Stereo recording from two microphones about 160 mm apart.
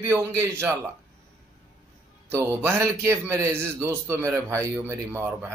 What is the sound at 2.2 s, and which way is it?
A man's voice, 15° right (ahead or behind).